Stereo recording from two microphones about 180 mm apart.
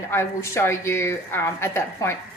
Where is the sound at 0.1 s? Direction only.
15° left (ahead or behind).